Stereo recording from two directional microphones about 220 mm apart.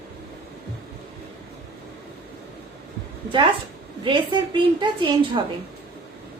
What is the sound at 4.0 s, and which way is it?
A woman's voice, 20° right (ahead or behind).